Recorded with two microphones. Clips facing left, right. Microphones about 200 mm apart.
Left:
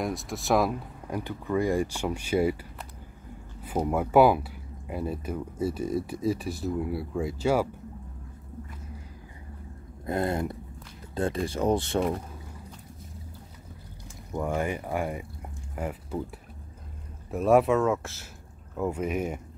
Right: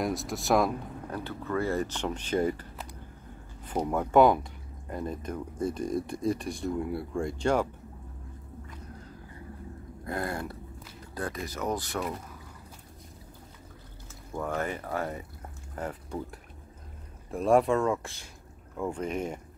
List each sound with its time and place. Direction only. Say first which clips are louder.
0.0 s speech: right 1 dB; centre (ahead or behind)
1.1 s speech: left 4 dB; 15° left (ahead or behind)
10.0 s speech: left 5 dB; 20° left (ahead or behind)
14.3 s speech: left 3 dB; 15° left (ahead or behind)